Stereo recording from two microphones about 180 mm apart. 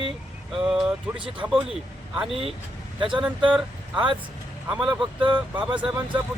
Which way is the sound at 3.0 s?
25° right (ahead or behind).